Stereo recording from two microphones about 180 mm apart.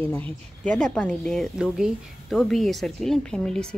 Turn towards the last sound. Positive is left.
turn(degrees=5)  # may be behind; listen again after turning